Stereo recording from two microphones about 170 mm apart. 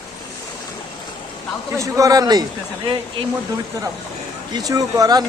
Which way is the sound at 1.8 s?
20° right (ahead or behind).